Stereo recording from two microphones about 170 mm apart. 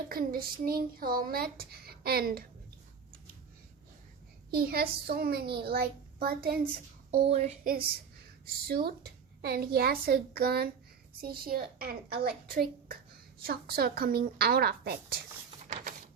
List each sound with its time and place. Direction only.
0.1 s speech: 60° right (ahead or behind)
4.5 s speech: 65° right (ahead or behind)
7.1 s child singing: 35° right (ahead or behind)
7.6 s speech: 55° right (ahead or behind)
13.4 s speech: 65° right (ahead or behind)